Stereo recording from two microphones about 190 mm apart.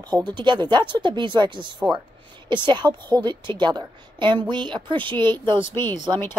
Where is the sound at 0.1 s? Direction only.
20° right (ahead or behind).